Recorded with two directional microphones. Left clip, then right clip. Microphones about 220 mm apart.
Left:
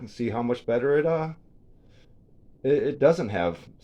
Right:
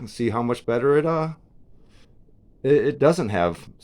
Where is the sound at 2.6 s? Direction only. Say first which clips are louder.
Right 3 dB; 60° right (ahead or behind).